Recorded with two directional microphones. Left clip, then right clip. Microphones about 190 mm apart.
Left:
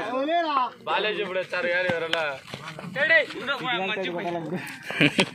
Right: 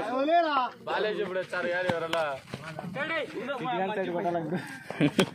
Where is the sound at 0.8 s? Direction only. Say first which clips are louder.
Left 4 dB; 30° left (ahead or behind).